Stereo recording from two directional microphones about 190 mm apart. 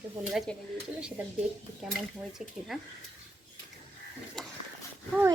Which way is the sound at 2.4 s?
Centre (ahead or behind).